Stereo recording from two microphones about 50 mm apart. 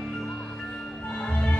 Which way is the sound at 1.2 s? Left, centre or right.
Left.